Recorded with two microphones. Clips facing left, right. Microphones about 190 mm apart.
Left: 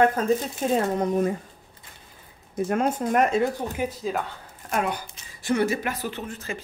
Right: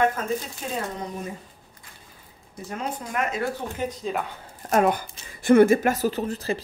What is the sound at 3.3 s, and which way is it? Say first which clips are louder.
Speech: left 5 dB; 25° left (ahead or behind).